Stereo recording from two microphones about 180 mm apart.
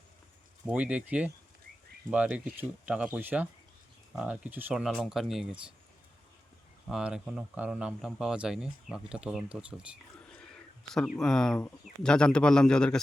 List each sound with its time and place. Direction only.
0.6 s speech: 5° right (ahead or behind)
6.8 s speech: 5° right (ahead or behind)